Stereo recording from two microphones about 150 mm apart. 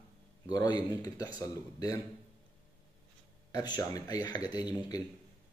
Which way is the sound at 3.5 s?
25° left (ahead or behind).